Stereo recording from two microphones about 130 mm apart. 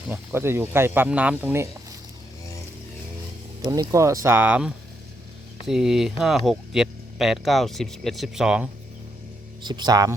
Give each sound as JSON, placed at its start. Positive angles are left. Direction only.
{"t": 0.1, "sound": "speech", "side_deg": -15}
{"t": 3.6, "sound": "speech", "side_deg": -25}
{"t": 4.4, "sound": "speech", "side_deg": -10}
{"t": 9.6, "sound": "speech", "side_deg": -35}